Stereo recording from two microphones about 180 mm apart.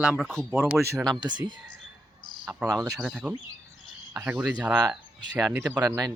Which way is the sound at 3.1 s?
5° right (ahead or behind).